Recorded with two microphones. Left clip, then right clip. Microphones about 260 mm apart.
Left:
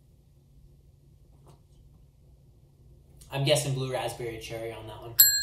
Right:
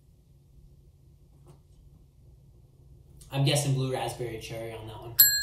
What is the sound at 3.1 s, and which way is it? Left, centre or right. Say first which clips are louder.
Speech: left 3 dB; centre.